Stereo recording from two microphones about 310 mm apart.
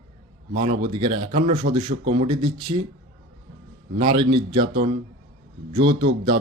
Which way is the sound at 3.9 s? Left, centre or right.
Centre.